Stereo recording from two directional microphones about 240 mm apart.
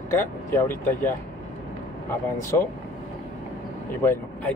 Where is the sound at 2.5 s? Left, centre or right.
Centre.